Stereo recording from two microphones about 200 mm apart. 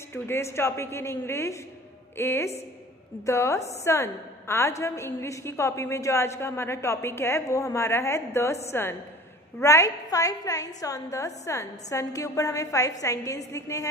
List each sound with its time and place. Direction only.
0.1 s a woman's voice: 15° left (ahead or behind)
9.6 s a woman's voice: 15° left (ahead or behind)